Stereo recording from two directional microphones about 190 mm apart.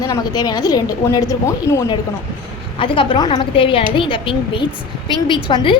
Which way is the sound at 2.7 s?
25° left (ahead or behind).